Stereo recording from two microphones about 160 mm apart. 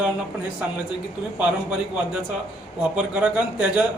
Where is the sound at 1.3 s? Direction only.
10° right (ahead or behind).